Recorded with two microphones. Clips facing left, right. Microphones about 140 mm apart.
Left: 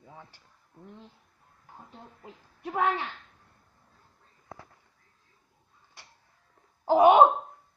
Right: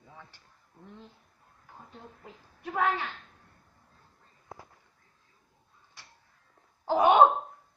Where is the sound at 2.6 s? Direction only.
25° left (ahead or behind).